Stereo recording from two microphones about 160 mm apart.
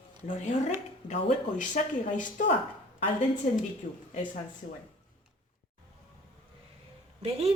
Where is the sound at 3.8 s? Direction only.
50° left (ahead or behind).